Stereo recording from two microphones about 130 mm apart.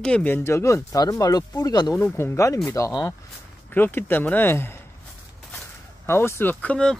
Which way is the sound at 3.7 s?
15° left (ahead or behind).